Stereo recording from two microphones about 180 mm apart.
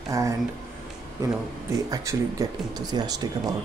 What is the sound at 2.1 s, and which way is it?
Speech, 15° right (ahead or behind).